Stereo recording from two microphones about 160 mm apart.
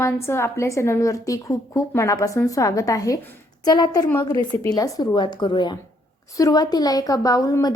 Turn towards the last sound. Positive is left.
turn(degrees=20)  # may be behind; listen again after turning